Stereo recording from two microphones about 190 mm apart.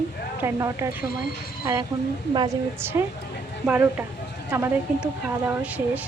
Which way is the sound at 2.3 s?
15° right (ahead or behind).